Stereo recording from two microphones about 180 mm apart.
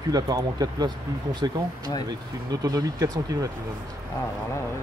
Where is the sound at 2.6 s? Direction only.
20° right (ahead or behind).